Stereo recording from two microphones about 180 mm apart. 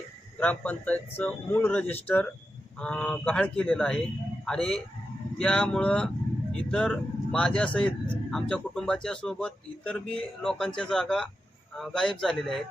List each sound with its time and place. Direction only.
0.3 s speech: 10° left (ahead or behind)